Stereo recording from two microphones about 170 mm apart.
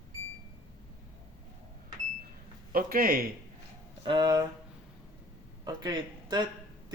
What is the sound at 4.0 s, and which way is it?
Speech, 25° right (ahead or behind).